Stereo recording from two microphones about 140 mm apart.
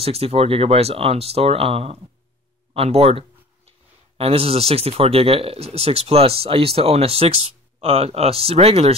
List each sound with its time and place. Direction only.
0.0 s speech: 45° right (ahead or behind)